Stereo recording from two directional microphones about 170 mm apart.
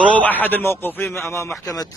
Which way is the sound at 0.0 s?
10° left (ahead or behind).